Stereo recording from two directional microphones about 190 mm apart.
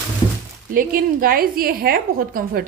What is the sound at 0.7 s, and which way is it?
A woman's voice, 50° right (ahead or behind).